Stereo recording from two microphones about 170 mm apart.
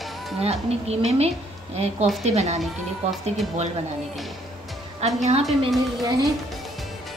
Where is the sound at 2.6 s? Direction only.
Centre (ahead or behind).